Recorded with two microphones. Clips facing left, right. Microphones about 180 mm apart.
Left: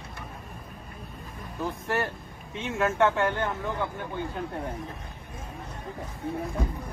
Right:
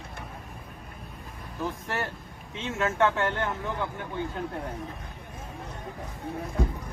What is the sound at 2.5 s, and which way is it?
Speech, 15° left (ahead or behind).